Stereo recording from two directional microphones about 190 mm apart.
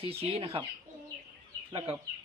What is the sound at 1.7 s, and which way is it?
Speech, 30° right (ahead or behind).